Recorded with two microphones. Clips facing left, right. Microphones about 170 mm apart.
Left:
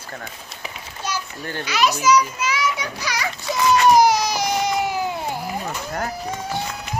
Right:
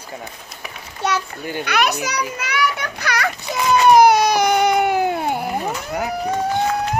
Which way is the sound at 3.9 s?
60° right (ahead or behind).